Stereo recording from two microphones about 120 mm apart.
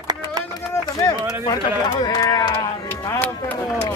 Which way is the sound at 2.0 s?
35° left (ahead or behind).